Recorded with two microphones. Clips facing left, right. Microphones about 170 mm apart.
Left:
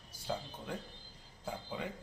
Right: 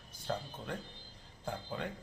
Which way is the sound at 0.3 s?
5° left (ahead or behind).